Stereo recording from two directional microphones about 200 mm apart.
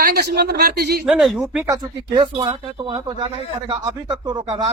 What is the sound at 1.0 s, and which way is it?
Speech, centre (ahead or behind).